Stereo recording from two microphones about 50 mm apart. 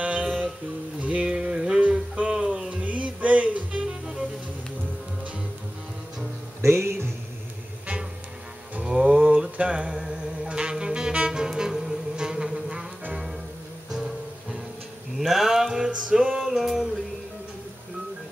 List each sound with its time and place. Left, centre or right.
0.0 s music: right
6.6 s music: right
8.8 s music: centre
15.1 s music: centre